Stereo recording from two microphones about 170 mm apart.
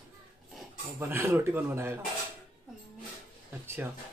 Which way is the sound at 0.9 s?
15° right (ahead or behind).